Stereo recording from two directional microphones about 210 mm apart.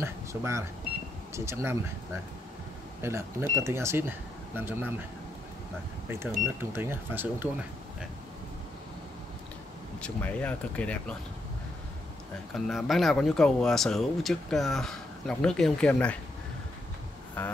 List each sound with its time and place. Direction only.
0.0 s speech: 15° right (ahead or behind)
3.0 s speech: 10° right (ahead or behind)
6.0 s speech: 10° right (ahead or behind)
10.0 s speech: 5° left (ahead or behind)
12.5 s speech: centre (ahead or behind)
17.4 s speech: 5° left (ahead or behind)